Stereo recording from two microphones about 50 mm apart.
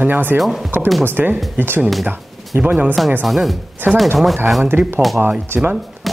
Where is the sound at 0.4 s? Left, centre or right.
Centre.